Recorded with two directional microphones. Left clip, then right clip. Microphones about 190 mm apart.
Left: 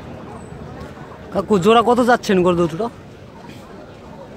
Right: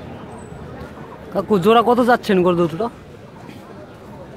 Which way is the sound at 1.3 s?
5° left (ahead or behind).